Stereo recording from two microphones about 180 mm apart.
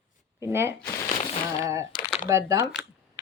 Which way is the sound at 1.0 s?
35° left (ahead or behind).